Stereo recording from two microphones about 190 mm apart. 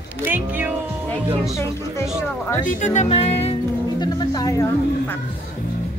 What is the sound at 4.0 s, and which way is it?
Speech, 20° left (ahead or behind).